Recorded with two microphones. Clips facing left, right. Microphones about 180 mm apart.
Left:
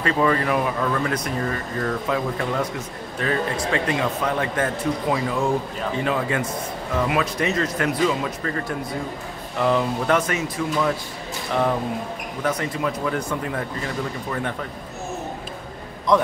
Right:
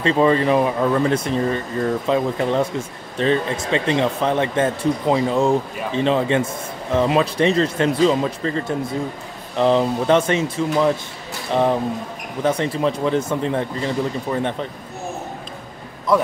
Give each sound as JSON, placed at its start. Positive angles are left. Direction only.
{"t": 0.0, "sound": "speech", "side_deg": -25}
{"t": 12.4, "sound": "speech", "side_deg": -25}
{"t": 16.1, "sound": "a man's voice", "side_deg": -5}